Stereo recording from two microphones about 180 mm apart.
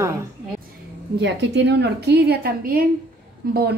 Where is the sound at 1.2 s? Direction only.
70° right (ahead or behind).